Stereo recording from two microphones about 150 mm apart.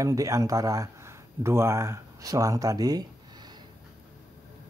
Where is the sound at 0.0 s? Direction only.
20° right (ahead or behind).